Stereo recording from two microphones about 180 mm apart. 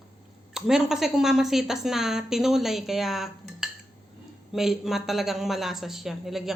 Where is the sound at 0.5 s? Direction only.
5° right (ahead or behind).